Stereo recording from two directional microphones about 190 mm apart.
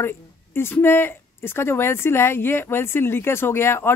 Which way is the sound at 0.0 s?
10° left (ahead or behind).